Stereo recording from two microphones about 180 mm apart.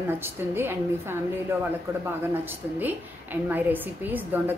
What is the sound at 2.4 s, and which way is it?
A woman's voice, 10° right (ahead or behind).